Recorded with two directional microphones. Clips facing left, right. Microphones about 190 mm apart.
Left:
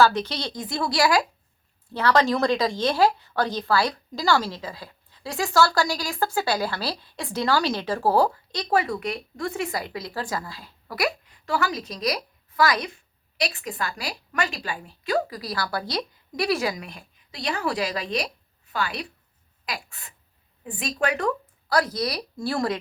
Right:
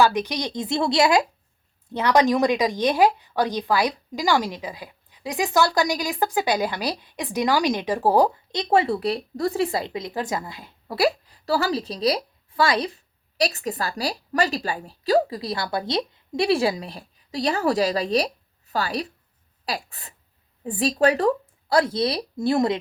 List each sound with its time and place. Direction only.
0.0 s speech: 15° right (ahead or behind)